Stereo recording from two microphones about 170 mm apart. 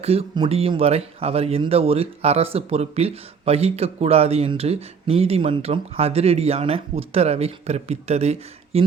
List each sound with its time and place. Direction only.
0.0 s speech: 35° right (ahead or behind)